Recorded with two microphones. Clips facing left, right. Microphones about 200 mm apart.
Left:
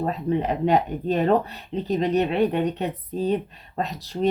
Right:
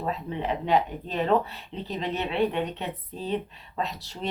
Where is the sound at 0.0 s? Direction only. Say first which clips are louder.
Left 7 dB; 50° left (ahead or behind).